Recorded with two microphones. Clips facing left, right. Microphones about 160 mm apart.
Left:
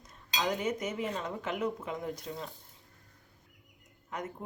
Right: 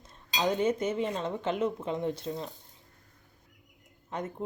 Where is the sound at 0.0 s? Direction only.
30° right (ahead or behind).